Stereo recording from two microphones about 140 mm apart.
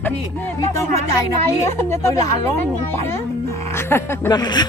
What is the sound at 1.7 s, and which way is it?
Speech, 20° left (ahead or behind).